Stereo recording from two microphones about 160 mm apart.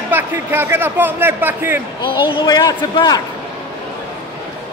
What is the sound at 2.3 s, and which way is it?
Speech, 25° left (ahead or behind).